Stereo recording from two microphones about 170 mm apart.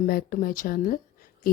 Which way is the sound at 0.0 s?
60° left (ahead or behind).